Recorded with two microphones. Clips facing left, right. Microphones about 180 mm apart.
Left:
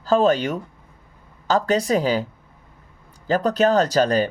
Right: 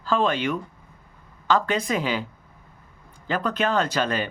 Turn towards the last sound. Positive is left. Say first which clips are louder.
# left 6 dB
turn(degrees=40)  # may be behind; listen again after turning